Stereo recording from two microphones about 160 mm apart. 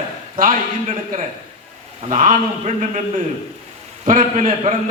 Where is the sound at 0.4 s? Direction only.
60° right (ahead or behind).